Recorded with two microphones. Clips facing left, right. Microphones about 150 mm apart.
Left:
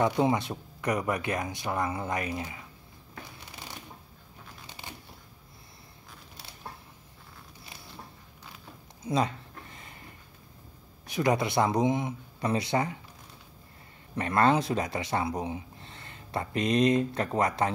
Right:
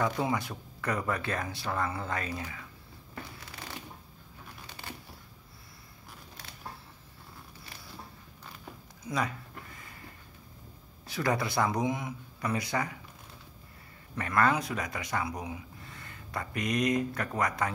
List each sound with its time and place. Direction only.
0.0 s speech: 25° left (ahead or behind)
9.0 s a sound: 25° left (ahead or behind)
11.1 s speech: 20° left (ahead or behind)
14.1 s speech: 25° left (ahead or behind)